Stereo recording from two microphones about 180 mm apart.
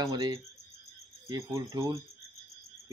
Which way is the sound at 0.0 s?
20° right (ahead or behind).